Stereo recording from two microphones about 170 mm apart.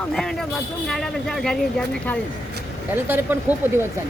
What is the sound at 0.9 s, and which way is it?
Speech, 5° left (ahead or behind).